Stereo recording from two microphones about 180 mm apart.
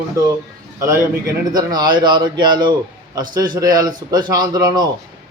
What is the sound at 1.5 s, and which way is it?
A man's voice, 25° right (ahead or behind).